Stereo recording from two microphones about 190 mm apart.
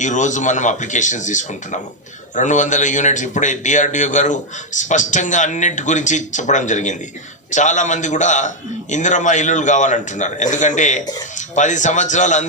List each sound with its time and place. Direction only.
0.0 s a man's voice: 40° left (ahead or behind)